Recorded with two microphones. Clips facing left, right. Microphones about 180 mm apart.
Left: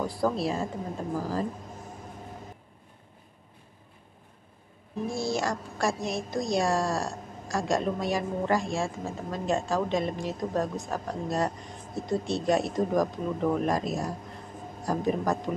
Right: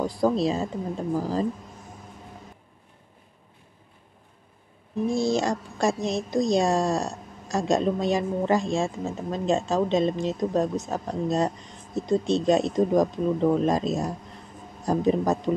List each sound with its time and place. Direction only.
0.2 s a woman's voice: 20° right (ahead or behind)
5.0 s a woman's voice: 20° right (ahead or behind)